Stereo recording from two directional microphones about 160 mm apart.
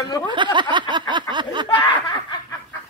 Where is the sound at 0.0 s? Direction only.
25° left (ahead or behind).